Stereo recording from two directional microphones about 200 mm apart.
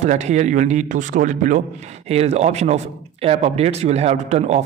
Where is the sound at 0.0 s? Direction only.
35° right (ahead or behind).